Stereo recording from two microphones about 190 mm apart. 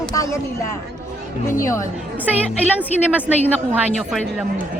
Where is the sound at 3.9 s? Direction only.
Centre (ahead or behind).